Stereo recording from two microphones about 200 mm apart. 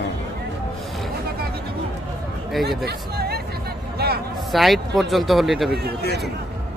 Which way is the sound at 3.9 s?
50° right (ahead or behind).